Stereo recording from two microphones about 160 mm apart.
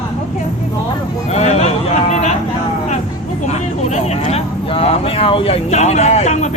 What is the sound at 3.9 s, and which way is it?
Speech, 40° left (ahead or behind).